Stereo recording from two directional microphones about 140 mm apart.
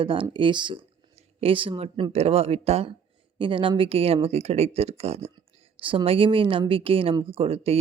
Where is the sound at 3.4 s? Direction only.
35° right (ahead or behind).